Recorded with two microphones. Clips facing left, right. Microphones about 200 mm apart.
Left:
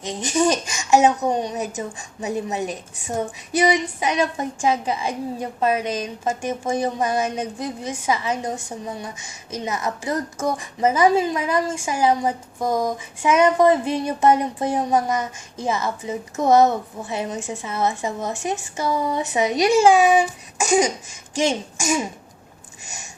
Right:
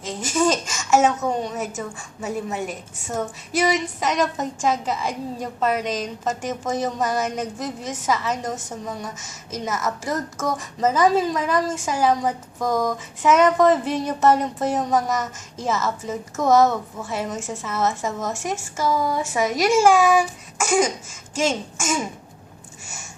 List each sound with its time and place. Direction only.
0.0 s a woman's voice: 15° left (ahead or behind)